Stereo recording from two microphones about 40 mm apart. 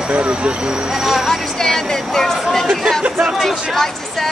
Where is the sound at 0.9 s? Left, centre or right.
Centre.